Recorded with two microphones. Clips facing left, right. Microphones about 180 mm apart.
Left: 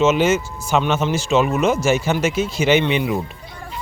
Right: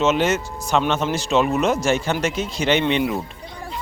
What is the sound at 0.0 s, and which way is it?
Speech, centre (ahead or behind).